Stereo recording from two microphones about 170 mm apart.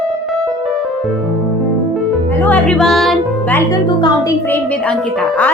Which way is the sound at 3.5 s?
20° left (ahead or behind).